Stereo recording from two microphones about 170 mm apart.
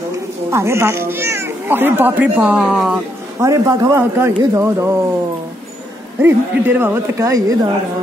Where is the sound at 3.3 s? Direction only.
20° right (ahead or behind).